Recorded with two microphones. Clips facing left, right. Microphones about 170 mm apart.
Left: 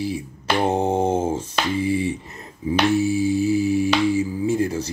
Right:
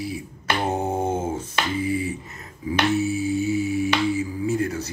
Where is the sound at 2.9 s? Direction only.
30° left (ahead or behind).